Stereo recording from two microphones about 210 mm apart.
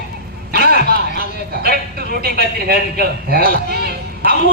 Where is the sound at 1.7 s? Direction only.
45° right (ahead or behind).